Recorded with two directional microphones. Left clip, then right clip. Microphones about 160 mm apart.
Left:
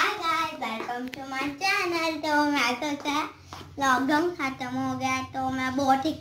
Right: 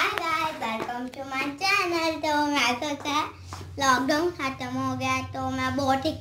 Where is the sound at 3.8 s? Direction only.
35° right (ahead or behind).